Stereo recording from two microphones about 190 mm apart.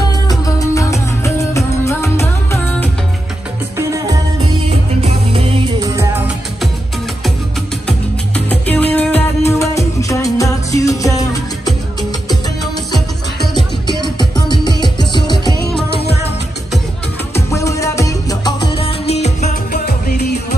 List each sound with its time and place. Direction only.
0.3 s music: 15° left (ahead or behind)
3.7 s music: 15° right (ahead or behind)
4.6 s music: 30° right (ahead or behind)
5.8 s music: 15° right (ahead or behind)
8.5 s music: 10° left (ahead or behind)
14.0 s music: 25° left (ahead or behind)
17.3 s music: 15° left (ahead or behind)
19.0 s music: 35° left (ahead or behind)
19.7 s music: 55° left (ahead or behind)